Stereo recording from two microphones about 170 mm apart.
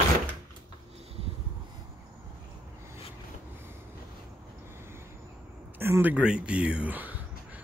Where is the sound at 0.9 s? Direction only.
35° right (ahead or behind).